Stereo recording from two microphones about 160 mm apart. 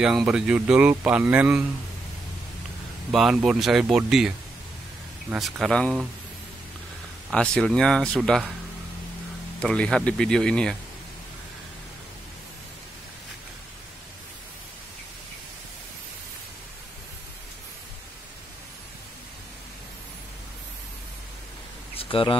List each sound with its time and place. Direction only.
0.0 s speech: 5° right (ahead or behind)
3.1 s speech: centre (ahead or behind)
5.3 s speech: centre (ahead or behind)
7.2 s speech: 5° left (ahead or behind)
9.6 s speech: 5° left (ahead or behind)
21.9 s a sound: 35° left (ahead or behind)